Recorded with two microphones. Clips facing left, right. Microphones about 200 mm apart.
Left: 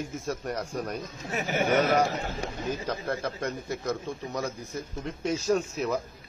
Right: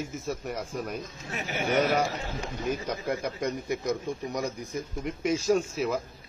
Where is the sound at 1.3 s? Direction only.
45° left (ahead or behind).